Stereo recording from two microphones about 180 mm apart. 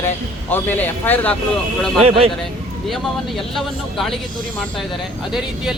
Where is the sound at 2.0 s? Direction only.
30° right (ahead or behind).